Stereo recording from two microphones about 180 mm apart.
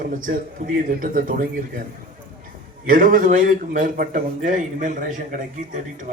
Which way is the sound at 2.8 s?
50° right (ahead or behind).